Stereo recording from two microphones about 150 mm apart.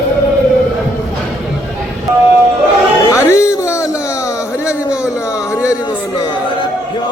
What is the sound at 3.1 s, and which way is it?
Music, 20° left (ahead or behind).